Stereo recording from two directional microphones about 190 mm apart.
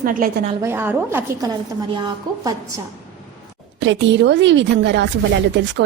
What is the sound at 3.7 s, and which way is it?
Speech, 70° right (ahead or behind).